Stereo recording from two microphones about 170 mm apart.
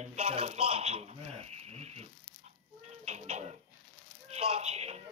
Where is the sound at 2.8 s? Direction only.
40° right (ahead or behind).